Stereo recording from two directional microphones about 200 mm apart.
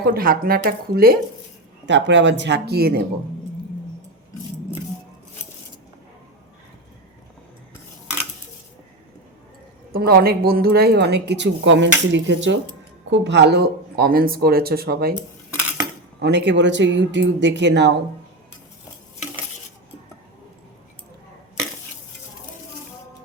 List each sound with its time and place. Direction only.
0.0 s speech: 45° right (ahead or behind)
1.9 s a woman's voice: 60° right (ahead or behind)
9.9 s a woman's voice: 50° right (ahead or behind)
16.2 s a woman's voice: 60° right (ahead or behind)